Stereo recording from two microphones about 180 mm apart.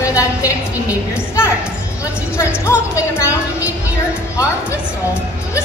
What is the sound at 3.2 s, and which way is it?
Speech, 10° right (ahead or behind).